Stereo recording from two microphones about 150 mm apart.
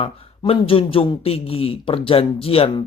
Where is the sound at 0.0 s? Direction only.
40° left (ahead or behind).